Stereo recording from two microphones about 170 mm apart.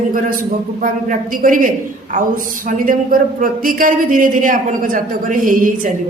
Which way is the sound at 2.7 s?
55° right (ahead or behind).